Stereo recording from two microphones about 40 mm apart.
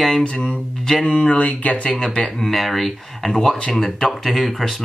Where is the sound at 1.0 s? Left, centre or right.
Left.